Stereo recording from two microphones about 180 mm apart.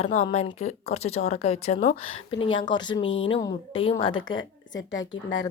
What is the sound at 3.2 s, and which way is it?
A woman's voice, 30° left (ahead or behind).